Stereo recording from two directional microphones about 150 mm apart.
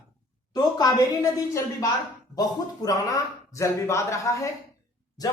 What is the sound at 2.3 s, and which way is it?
Speech, 25° left (ahead or behind).